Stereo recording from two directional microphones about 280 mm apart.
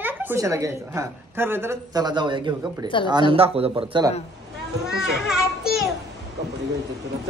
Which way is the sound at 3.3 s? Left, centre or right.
Right.